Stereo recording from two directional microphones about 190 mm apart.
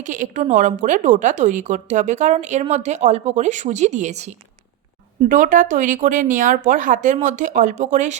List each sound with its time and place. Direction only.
0.0 s a woman's voice: 40° right (ahead or behind)
5.3 s speech: 40° right (ahead or behind)